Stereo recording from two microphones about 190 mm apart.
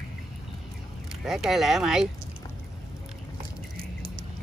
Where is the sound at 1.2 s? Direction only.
Centre (ahead or behind).